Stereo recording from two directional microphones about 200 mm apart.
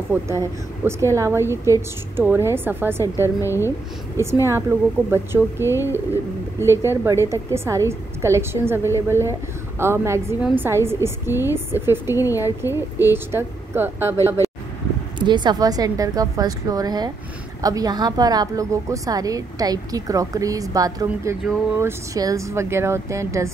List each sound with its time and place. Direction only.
0.1 s a woman's voice: 15° right (ahead or behind)
3.3 s speech: 15° left (ahead or behind)
4.2 s a woman's voice: 15° right (ahead or behind)
15.1 s a woman's voice: 20° right (ahead or behind)